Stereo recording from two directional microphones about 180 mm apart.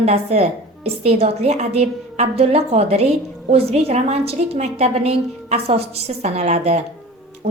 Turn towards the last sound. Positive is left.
turn(degrees=-35)  # may be behind; listen again after turning